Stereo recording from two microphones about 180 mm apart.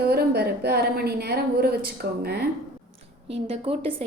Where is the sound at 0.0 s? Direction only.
60° right (ahead or behind).